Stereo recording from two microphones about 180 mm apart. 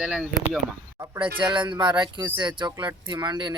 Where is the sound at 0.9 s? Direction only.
20° right (ahead or behind).